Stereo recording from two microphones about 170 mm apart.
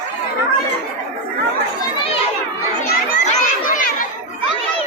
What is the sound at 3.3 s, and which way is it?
Children playing, 50° left (ahead or behind).